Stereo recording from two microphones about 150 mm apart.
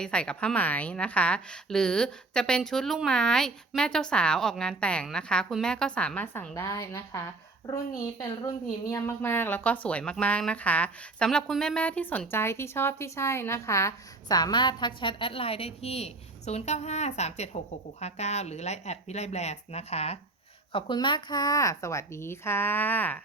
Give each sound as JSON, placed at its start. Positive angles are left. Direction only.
{"t": 0.0, "sound": "a woman's voice", "side_deg": 5}
{"t": 20.7, "sound": "speech", "side_deg": 30}